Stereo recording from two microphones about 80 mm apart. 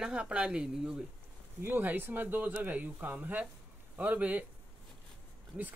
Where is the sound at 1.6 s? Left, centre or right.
Right.